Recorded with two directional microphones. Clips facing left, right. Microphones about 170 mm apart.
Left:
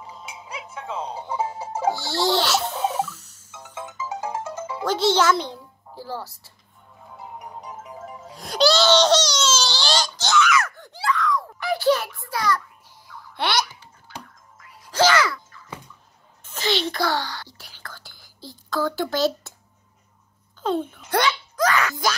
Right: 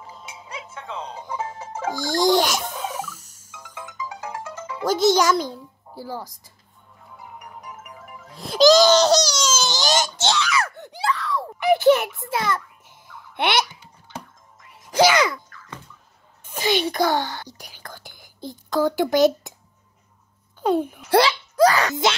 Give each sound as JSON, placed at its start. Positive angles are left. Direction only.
{"t": 0.0, "sound": "music", "side_deg": 0}
{"t": 1.1, "sound": "music", "side_deg": 35}
{"t": 2.0, "sound": "music", "side_deg": -15}
{"t": 3.5, "sound": "music", "side_deg": 25}
{"t": 4.8, "sound": "a child's voice", "side_deg": -10}
{"t": 7.2, "sound": "music", "side_deg": 25}
{"t": 8.7, "sound": "baby cry", "side_deg": -10}
{"t": 11.1, "sound": "a sound", "side_deg": -30}
{"t": 13.4, "sound": "babbling", "side_deg": -25}
{"t": 14.8, "sound": "music", "side_deg": -15}
{"t": 16.4, "sound": "a sound", "side_deg": -10}
{"t": 17.6, "sound": "whispering", "side_deg": -15}
{"t": 20.6, "sound": "babbling", "side_deg": -10}
{"t": 21.1, "sound": "a sound", "side_deg": -30}